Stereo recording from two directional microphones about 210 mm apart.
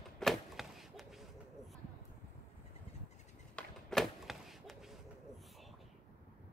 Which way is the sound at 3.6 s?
Centre (ahead or behind).